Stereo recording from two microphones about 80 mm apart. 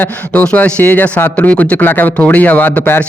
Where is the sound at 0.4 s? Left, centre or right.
Left.